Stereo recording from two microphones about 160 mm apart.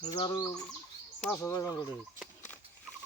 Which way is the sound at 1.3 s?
15° left (ahead or behind).